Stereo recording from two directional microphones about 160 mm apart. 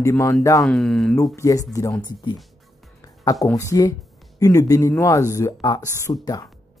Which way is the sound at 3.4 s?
20° left (ahead or behind).